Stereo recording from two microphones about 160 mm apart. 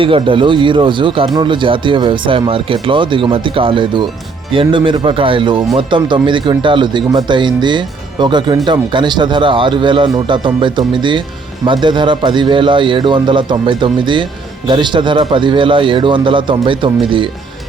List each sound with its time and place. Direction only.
0.0 s speech: 35° right (ahead or behind)